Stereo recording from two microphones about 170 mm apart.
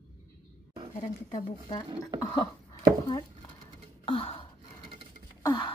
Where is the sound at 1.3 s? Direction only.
30° left (ahead or behind).